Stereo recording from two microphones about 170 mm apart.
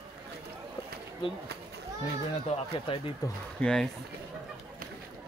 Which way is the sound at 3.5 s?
5° left (ahead or behind).